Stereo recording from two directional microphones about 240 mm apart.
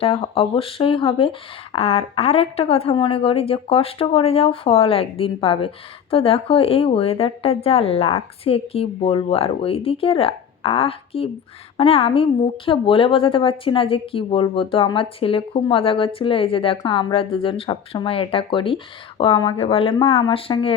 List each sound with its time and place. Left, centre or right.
0.0 s speech: left